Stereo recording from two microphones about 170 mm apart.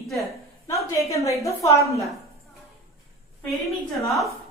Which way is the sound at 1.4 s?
20° left (ahead or behind).